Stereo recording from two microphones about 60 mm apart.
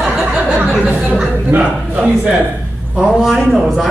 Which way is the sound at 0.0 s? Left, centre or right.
Centre.